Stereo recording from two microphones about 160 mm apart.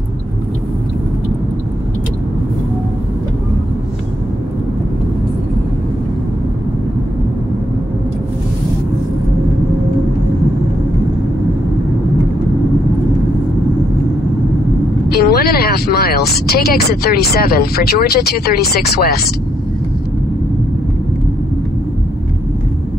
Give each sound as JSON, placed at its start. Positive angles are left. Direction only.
{"t": 15.0, "sound": "speech", "side_deg": 75}